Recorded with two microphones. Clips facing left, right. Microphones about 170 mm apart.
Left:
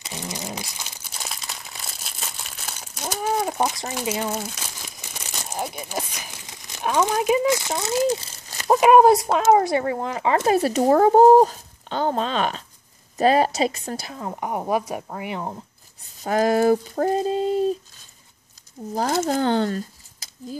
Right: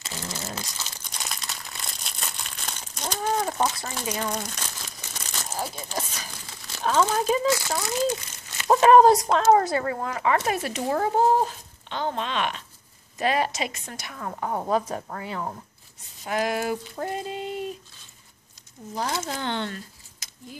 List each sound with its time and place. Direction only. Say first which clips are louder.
0.0 s crumpling: left 3 dB; 15° left (ahead or behind)
5.4 s speech: left 3 dB; 15° left (ahead or behind); by 8.6 s 30° left (ahead or behind)
8.6 s speech: left 1 dB; 10° left (ahead or behind)
16.2 s speech: left 7 dB; 40° left (ahead or behind)
18.9 s speech: left 8 dB; 45° left (ahead or behind)